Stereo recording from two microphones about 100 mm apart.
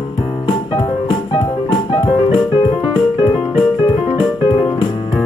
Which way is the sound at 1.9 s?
50° left (ahead or behind).